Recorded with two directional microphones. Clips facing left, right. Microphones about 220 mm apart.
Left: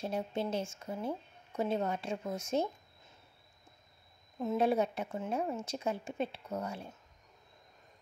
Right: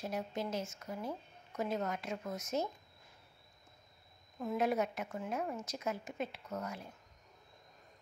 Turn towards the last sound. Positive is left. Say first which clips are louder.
# left 3 dB
turn(degrees=30)  # may be behind; listen again after turning